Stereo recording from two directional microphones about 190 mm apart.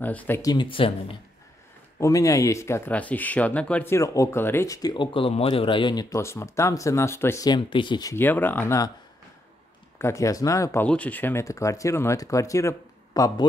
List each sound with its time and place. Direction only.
0.0 s speech: 10° left (ahead or behind); by 1.1 s 30° left (ahead or behind)
2.0 s speech: 15° left (ahead or behind)
9.9 s speech: 15° left (ahead or behind)